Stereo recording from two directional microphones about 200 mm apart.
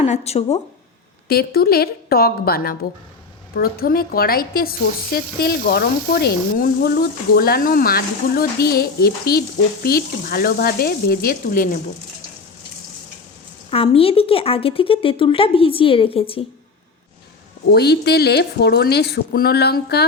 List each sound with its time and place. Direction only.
0.0 s speech: 30° left (ahead or behind)
1.3 s speech: 50° left (ahead or behind)
13.7 s speech: 30° left (ahead or behind)
17.7 s speech: 55° left (ahead or behind)